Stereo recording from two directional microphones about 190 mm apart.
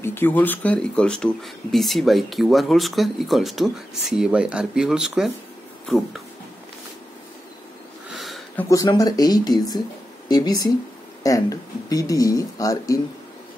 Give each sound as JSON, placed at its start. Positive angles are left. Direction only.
{"t": 0.0, "sound": "speech", "side_deg": 10}
{"t": 8.1, "sound": "a sound", "side_deg": 0}
{"t": 8.6, "sound": "speech", "side_deg": 20}